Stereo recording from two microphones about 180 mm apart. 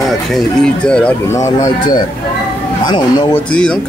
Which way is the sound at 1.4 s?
20° left (ahead or behind).